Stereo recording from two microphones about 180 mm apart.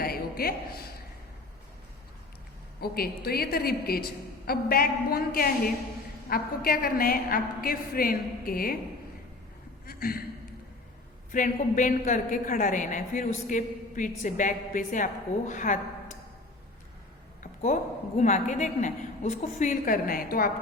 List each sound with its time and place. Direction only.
0.0 s a sound: 55° left (ahead or behind)
2.8 s a woman's voice: 60° left (ahead or behind)
9.8 s a man's voice: 55° left (ahead or behind)
11.3 s a woman's voice: 50° left (ahead or behind)
17.4 s a sound: 45° left (ahead or behind)
18.2 s a woman's voice: 40° left (ahead or behind)